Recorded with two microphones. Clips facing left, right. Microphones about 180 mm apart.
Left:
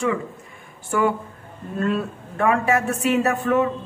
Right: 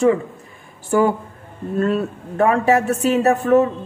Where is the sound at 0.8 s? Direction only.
35° right (ahead or behind).